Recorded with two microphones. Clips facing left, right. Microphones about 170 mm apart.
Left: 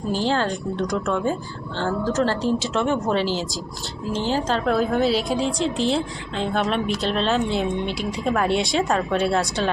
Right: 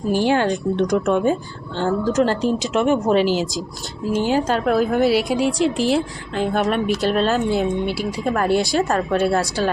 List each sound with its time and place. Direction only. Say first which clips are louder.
0.1 s a woman's voice: right 5 dB; 15° right (ahead or behind)